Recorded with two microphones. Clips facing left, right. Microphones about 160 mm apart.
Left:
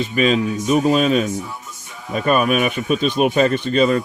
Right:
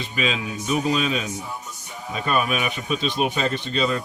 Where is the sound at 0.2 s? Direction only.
45° left (ahead or behind).